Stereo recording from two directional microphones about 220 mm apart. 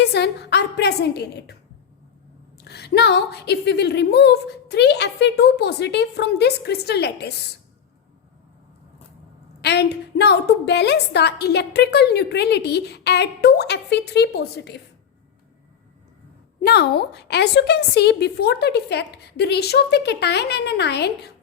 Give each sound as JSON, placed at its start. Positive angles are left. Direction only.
{"t": 0.0, "sound": "a woman's voice", "side_deg": 50}
{"t": 2.6, "sound": "a woman's voice", "side_deg": 50}
{"t": 9.6, "sound": "a woman's voice", "side_deg": 50}
{"t": 16.6, "sound": "a woman's voice", "side_deg": 45}